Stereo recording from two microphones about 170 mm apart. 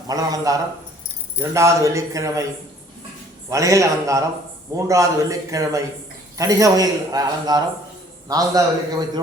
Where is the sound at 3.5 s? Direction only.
20° right (ahead or behind).